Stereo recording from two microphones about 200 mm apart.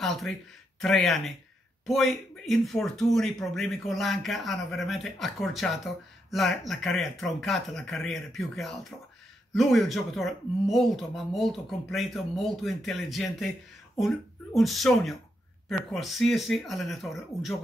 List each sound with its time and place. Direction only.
0.0 s speech: centre (ahead or behind)